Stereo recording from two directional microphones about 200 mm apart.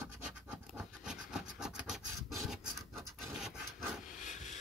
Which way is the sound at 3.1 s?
Centre (ahead or behind).